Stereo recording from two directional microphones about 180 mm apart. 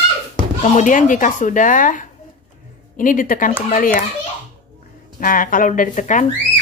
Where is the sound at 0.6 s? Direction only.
45° left (ahead or behind).